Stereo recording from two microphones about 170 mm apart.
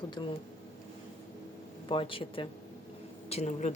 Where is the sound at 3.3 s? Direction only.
45° left (ahead or behind).